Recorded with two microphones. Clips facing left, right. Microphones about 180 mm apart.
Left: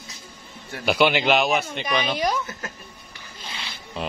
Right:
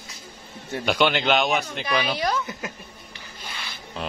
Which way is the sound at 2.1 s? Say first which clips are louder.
Left 1 dB; 20° left (ahead or behind).